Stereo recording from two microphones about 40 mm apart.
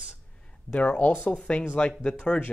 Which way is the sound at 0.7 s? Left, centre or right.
Left.